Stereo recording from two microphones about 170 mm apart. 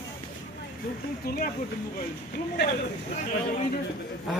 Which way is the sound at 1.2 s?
55° left (ahead or behind).